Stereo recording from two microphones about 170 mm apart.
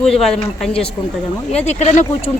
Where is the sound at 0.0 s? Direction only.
Centre (ahead or behind).